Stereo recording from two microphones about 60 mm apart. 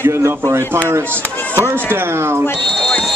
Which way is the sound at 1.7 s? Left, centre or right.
Right.